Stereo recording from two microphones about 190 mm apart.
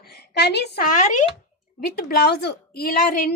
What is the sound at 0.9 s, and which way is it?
Speech, 40° left (ahead or behind).